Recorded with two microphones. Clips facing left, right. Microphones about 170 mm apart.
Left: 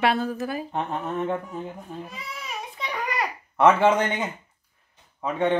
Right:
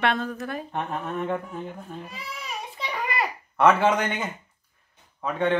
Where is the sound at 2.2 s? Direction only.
Centre (ahead or behind).